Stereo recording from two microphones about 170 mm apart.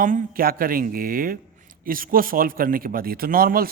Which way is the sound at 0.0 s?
55° right (ahead or behind).